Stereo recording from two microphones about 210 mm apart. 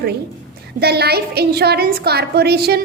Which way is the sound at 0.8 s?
50° right (ahead or behind).